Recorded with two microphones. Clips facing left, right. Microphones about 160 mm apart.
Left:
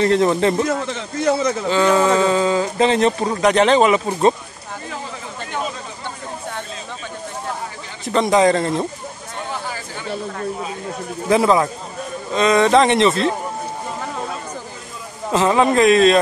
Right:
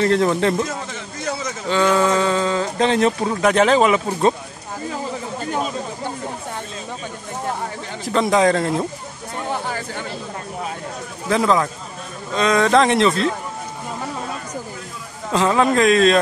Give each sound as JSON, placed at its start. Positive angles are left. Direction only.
{"t": 0.0, "sound": "speech", "side_deg": 0}
{"t": 1.7, "sound": "speech", "side_deg": 0}
{"t": 8.1, "sound": "speech", "side_deg": 0}
{"t": 9.7, "sound": "a sound", "side_deg": -55}
{"t": 11.2, "sound": "speech", "side_deg": 10}
{"t": 15.3, "sound": "speech", "side_deg": 0}